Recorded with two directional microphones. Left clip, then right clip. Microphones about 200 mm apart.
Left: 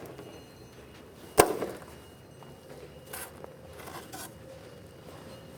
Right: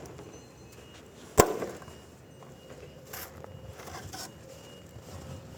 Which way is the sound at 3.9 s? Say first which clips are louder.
Right 2 dB; 10° right (ahead or behind).